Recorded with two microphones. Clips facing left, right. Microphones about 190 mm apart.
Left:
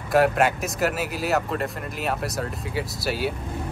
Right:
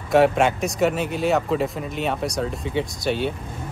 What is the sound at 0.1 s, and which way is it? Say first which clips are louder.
Speech: right 3 dB; centre (ahead or behind).